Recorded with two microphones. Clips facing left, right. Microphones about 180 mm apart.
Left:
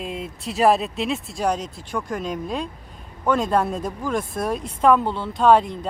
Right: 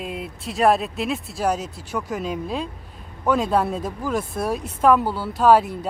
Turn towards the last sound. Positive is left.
turn(degrees=-5)  # may be behind; listen again after turning